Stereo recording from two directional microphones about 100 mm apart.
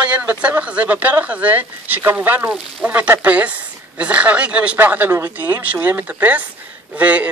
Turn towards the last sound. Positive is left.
turn(degrees=-15)  # may be behind; listen again after turning